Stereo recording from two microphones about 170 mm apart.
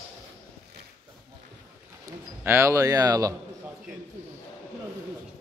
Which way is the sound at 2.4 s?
15° right (ahead or behind).